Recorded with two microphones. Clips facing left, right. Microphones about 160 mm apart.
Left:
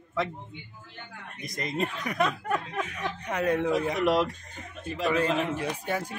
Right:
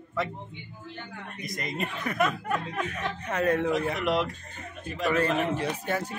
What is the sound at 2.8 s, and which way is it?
Speech, 10° left (ahead or behind).